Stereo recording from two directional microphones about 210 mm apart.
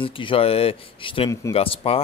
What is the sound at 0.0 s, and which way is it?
Speech, 25° left (ahead or behind).